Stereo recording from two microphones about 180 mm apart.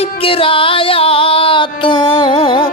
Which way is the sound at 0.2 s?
30° left (ahead or behind).